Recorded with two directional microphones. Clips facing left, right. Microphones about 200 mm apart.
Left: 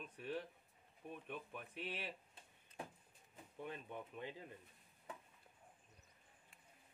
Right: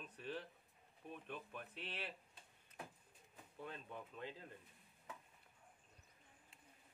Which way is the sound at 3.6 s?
15° left (ahead or behind).